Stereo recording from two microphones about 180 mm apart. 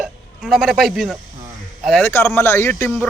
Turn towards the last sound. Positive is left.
turn(degrees=10)  # may be behind; listen again after turning